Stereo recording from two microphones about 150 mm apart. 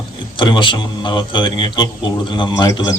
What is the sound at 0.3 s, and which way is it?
Speech, 30° left (ahead or behind).